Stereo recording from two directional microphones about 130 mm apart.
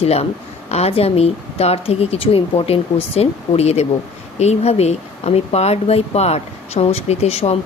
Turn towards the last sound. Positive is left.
turn(degrees=55)  # may be behind; listen again after turning